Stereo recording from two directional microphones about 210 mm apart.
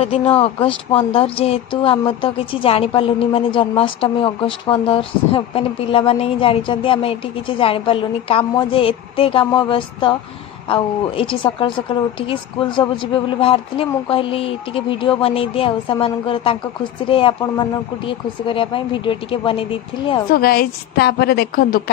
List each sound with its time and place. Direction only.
0.0 s a woman's voice: 25° left (ahead or behind)
20.2 s a woman's voice: 45° left (ahead or behind)